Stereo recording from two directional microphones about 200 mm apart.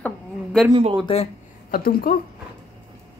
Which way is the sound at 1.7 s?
45° left (ahead or behind).